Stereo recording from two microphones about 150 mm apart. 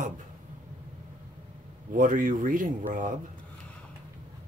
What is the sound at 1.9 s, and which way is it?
Speech, 60° right (ahead or behind).